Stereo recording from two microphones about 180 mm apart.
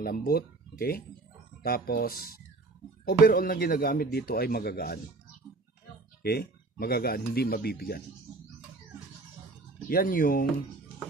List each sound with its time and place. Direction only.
0.0 s speech: 55° left (ahead or behind)
6.2 s speech: 60° left (ahead or behind)
9.8 s speech: 55° left (ahead or behind)